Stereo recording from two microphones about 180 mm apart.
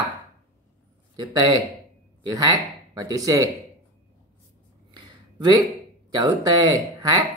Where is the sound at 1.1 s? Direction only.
25° right (ahead or behind).